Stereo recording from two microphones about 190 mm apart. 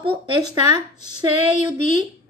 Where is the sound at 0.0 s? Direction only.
25° right (ahead or behind).